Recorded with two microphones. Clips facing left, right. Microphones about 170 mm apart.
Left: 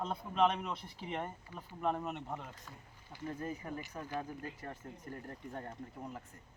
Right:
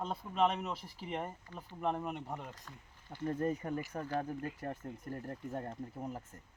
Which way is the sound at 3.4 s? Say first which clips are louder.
Right 7 dB; 60° right (ahead or behind).